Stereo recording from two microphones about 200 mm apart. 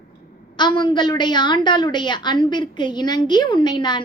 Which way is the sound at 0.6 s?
20° left (ahead or behind).